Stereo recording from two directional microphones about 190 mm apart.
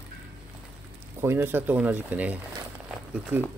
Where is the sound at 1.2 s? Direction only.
10° right (ahead or behind).